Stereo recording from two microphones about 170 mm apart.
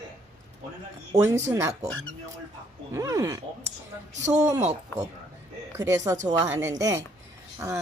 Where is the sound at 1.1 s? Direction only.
20° right (ahead or behind).